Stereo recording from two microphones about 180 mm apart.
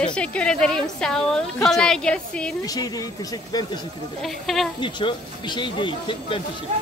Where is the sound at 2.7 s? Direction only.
20° left (ahead or behind).